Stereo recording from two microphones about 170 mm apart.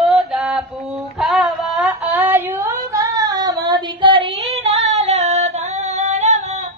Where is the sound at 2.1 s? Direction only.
15° right (ahead or behind); by 6.6 s 40° right (ahead or behind).